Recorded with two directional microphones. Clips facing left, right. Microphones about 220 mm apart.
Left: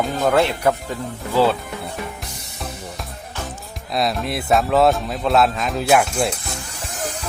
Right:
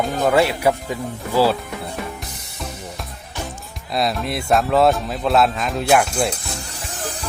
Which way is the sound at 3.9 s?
Centre (ahead or behind).